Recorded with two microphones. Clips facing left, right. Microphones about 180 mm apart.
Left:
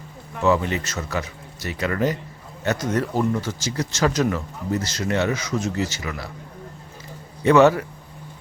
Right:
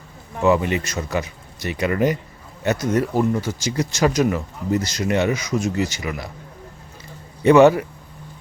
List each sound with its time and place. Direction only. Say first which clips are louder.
0.4 s speech: right 2 dB; 15° right (ahead or behind)
7.4 s speech: right 3 dB; 15° right (ahead or behind)